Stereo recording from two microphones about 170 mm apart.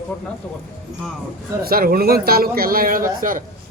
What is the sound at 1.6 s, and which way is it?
A man's voice, 60° right (ahead or behind).